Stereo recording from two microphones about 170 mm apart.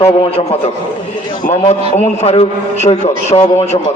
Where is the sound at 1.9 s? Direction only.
40° left (ahead or behind).